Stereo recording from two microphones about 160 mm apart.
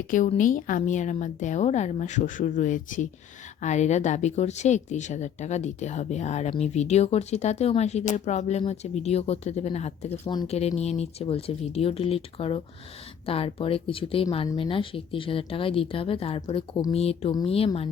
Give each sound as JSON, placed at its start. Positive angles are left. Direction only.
{"t": 0.1, "sound": "speech", "side_deg": 55}